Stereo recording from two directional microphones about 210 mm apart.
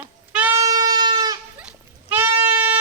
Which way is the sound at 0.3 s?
10° right (ahead or behind).